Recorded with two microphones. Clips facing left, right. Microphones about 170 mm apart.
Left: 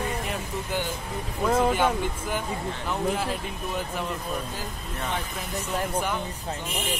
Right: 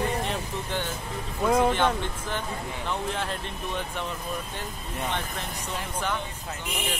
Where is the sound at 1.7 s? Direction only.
10° left (ahead or behind).